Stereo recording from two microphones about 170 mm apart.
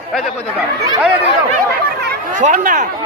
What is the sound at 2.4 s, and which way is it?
Speech, 50° right (ahead or behind).